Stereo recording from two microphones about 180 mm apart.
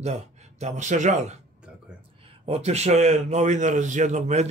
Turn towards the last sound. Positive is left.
turn(degrees=-40)  # may be behind; listen again after turning